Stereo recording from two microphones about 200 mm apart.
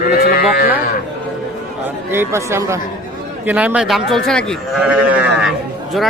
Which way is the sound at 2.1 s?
10° right (ahead or behind).